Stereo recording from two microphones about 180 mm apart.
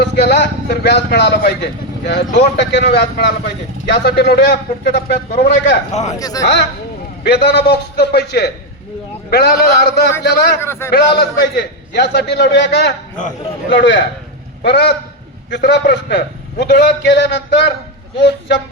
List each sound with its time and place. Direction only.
0.0 s a man's voice: 70° left (ahead or behind)
5.9 s speech: 40° left (ahead or behind)
6.1 s a man's voice: 20° left (ahead or behind)
7.3 s a man's voice: 65° left (ahead or behind)
10.6 s a man's voice: 15° left (ahead or behind)
11.2 s a man's voice: 70° left (ahead or behind)
14.6 s a man's voice: 70° left (ahead or behind)